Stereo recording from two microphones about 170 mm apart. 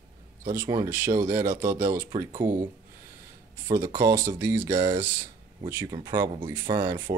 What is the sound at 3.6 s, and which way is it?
Speech, 15° right (ahead or behind).